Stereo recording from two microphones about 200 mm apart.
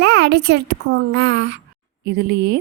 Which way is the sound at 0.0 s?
55° right (ahead or behind).